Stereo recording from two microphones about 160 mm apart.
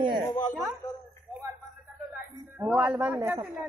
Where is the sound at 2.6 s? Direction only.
15° right (ahead or behind).